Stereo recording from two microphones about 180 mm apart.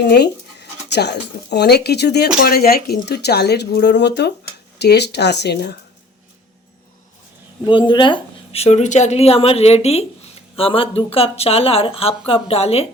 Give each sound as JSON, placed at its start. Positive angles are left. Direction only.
{"t": 0.0, "sound": "speech", "side_deg": 70}
{"t": 7.6, "sound": "a woman's voice", "side_deg": 25}